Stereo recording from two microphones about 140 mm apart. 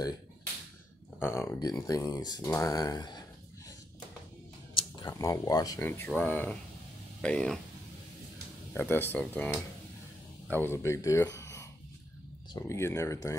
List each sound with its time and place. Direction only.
1.2 s speech: 15° left (ahead or behind)
4.9 s speech: 30° left (ahead or behind)
5.9 s speech: 15° left (ahead or behind)
8.7 s speech: 15° left (ahead or behind)
11.1 s a sound: 20° left (ahead or behind)
12.6 s speech: 20° left (ahead or behind)